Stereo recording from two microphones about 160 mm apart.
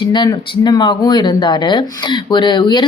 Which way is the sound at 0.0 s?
30° left (ahead or behind).